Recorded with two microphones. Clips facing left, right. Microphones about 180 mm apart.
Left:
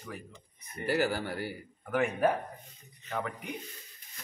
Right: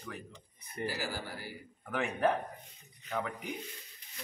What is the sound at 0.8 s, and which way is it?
Speech, 60° left (ahead or behind).